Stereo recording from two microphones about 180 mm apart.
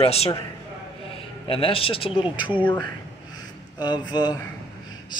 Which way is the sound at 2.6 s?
10° left (ahead or behind).